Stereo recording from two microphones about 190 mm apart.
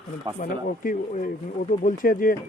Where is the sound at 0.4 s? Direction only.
45° left (ahead or behind).